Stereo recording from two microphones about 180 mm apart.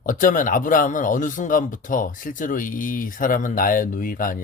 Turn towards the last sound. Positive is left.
turn(degrees=50)  # may be behind; listen again after turning